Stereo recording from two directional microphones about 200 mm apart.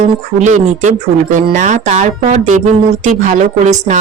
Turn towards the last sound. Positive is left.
turn(degrees=-35)  # may be behind; listen again after turning